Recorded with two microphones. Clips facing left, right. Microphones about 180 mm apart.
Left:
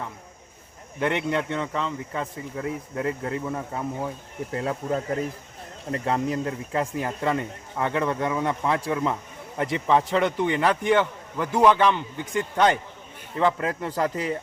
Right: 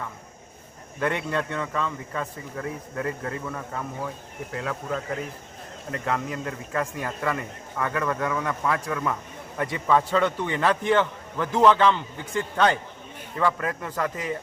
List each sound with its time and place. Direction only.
0.9 s speech: 20° left (ahead or behind)
4.5 s a man's voice: 30° left (ahead or behind)